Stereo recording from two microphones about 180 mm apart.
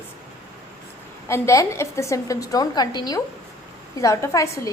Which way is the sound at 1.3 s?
15° left (ahead or behind).